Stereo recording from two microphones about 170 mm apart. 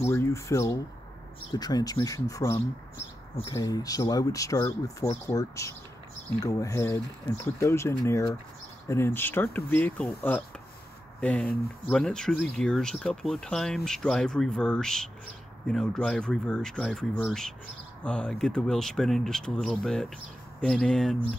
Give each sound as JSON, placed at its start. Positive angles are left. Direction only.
{"t": 0.0, "sound": "speech", "side_deg": 15}